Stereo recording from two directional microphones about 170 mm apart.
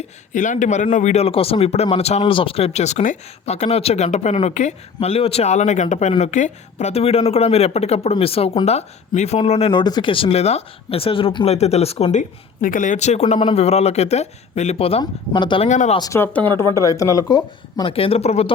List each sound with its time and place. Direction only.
0.3 s speech: 45° left (ahead or behind)
12.6 s speech: 50° left (ahead or behind); by 15.7 s 30° left (ahead or behind)
15.7 s speech: 45° left (ahead or behind)
16.0 s speech: 20° left (ahead or behind)
17.9 s speech: 35° left (ahead or behind)